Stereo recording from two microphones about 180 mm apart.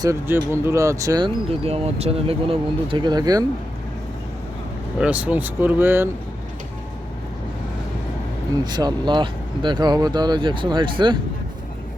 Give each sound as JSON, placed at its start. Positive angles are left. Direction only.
{"t": 0.0, "sound": "speech", "side_deg": -15}
{"t": 1.5, "sound": "speech", "side_deg": -35}
{"t": 4.9, "sound": "speech", "side_deg": -5}
{"t": 8.6, "sound": "speech", "side_deg": -25}